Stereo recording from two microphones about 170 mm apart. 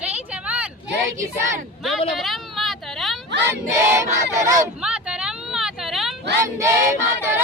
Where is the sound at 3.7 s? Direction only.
15° right (ahead or behind).